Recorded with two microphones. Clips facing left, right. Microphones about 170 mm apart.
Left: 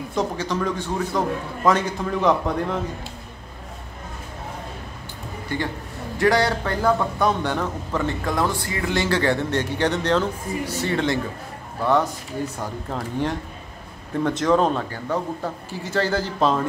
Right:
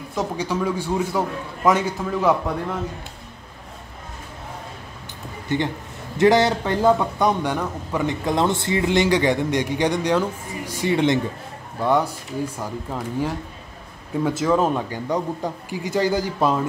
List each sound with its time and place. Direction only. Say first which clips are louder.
0.1 s a man's voice: even; 5° right (ahead or behind)
5.5 s a man's voice: right 4 dB; 20° right (ahead or behind)